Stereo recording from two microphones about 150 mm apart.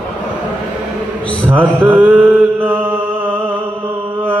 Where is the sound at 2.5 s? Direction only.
10° right (ahead or behind).